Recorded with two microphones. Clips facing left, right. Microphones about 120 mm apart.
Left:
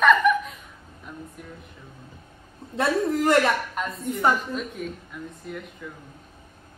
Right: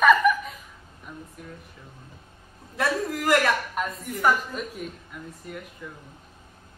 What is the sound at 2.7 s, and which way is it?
Speech, 25° left (ahead or behind).